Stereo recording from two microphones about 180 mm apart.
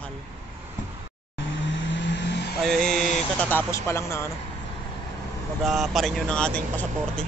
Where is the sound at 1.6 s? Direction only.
90° left; by 2.5 s 70° left (ahead or behind).